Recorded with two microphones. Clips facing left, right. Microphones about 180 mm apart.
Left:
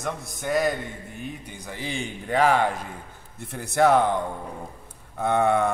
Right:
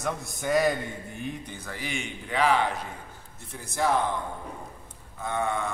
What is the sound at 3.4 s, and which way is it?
Speech, 60° left (ahead or behind).